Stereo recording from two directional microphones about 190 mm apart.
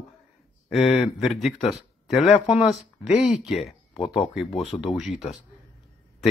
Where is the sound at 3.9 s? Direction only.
25° left (ahead or behind).